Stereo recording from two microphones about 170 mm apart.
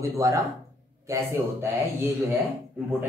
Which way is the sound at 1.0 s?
20° right (ahead or behind).